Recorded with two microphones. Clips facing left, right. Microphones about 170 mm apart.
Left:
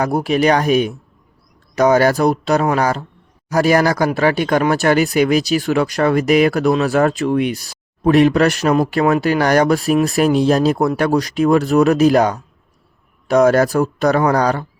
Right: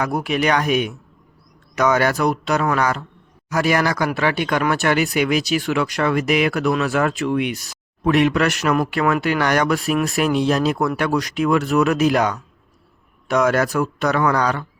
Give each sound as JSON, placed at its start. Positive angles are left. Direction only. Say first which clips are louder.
{"t": 0.0, "sound": "speech", "louder": "left 5 dB", "side_deg": 35}